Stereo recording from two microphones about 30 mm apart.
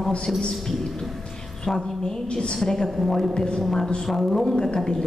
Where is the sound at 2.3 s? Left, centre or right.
Left.